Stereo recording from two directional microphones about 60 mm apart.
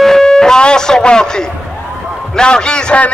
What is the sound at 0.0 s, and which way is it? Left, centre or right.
A man's voice, centre.